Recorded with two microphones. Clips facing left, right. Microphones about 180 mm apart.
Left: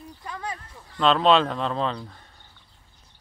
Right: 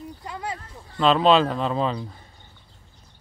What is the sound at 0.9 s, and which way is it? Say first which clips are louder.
Speech: right 1 dB; centre (ahead or behind).